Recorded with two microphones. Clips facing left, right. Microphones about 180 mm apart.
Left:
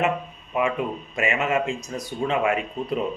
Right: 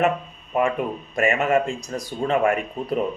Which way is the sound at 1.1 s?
40° right (ahead or behind).